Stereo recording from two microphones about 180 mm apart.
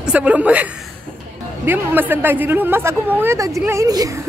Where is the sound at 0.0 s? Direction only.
5° right (ahead or behind).